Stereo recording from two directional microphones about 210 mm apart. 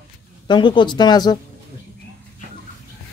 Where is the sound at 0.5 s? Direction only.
20° left (ahead or behind).